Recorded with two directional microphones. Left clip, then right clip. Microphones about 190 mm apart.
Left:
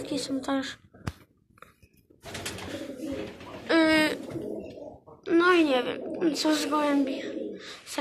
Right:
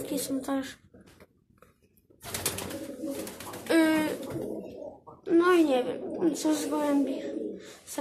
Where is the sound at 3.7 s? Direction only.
15° right (ahead or behind).